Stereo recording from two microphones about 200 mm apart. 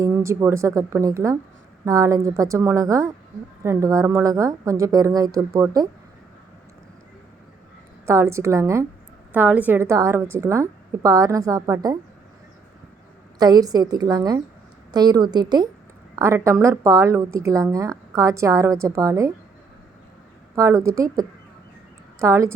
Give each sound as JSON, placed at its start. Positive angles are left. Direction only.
{"t": 0.0, "sound": "a woman's voice", "side_deg": -15}
{"t": 8.0, "sound": "a woman's voice", "side_deg": -15}
{"t": 13.4, "sound": "a woman's voice", "side_deg": -20}
{"t": 20.6, "sound": "a woman's voice", "side_deg": -15}